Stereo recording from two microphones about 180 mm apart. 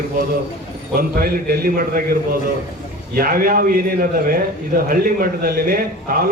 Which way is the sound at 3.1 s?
55° right (ahead or behind).